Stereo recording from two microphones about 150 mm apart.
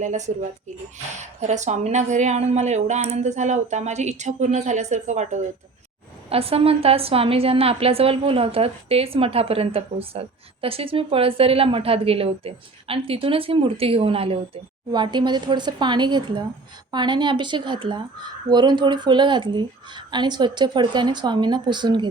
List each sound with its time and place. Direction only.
0.0 s a woman's voice: 55° right (ahead or behind)
1.4 s a woman's voice: 50° right (ahead or behind)
6.3 s a woman's voice: 40° right (ahead or behind)